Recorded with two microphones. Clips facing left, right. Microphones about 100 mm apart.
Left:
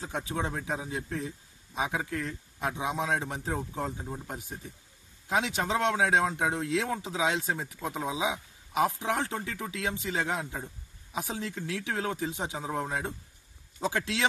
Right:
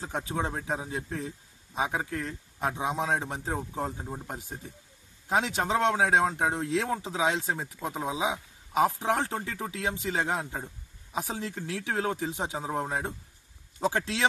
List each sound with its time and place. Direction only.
0.0 s a man's voice: 30° right (ahead or behind)
4.3 s a man's voice: 30° right (ahead or behind)
8.1 s speech: 35° right (ahead or behind)
10.4 s a man's voice: 20° right (ahead or behind)
11.1 s a man's voice: 40° right (ahead or behind)